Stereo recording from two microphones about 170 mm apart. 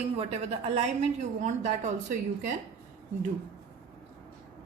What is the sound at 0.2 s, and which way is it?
A woman's voice, 40° right (ahead or behind).